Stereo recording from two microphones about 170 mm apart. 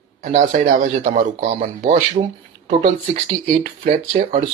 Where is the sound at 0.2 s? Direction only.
45° right (ahead or behind).